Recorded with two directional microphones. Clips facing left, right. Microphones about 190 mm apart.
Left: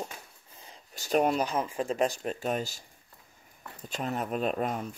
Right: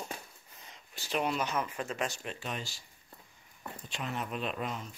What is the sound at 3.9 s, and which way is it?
Speech, 40° left (ahead or behind).